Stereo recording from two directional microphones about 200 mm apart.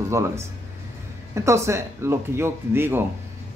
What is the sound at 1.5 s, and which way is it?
Speech, 15° right (ahead or behind).